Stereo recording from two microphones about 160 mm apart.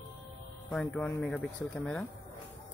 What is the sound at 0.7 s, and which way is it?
Speech, 5° left (ahead or behind).